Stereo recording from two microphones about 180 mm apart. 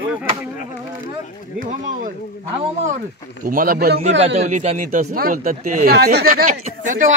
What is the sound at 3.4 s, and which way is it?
Speech, 50° right (ahead or behind).